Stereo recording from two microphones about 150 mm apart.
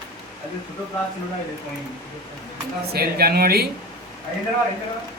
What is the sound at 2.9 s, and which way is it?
Speech, 90° right.